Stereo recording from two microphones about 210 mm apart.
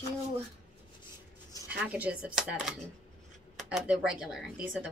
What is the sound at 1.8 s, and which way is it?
A woman's voice, 5° right (ahead or behind).